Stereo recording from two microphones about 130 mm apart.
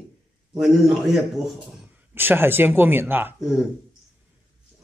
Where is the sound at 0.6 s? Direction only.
5° right (ahead or behind).